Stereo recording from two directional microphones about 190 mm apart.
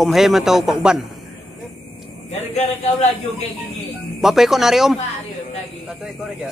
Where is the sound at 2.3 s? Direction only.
35° left (ahead or behind).